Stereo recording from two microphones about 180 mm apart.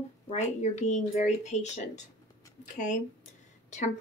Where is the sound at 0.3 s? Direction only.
40° left (ahead or behind).